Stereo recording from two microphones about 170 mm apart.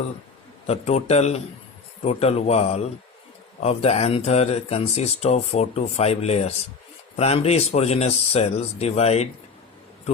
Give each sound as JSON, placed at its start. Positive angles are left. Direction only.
{"t": 0.7, "sound": "speech", "side_deg": 40}